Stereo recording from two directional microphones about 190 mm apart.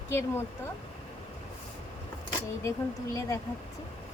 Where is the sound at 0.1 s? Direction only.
15° left (ahead or behind).